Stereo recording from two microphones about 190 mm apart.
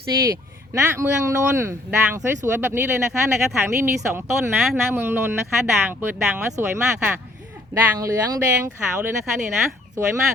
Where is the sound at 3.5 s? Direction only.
10° right (ahead or behind).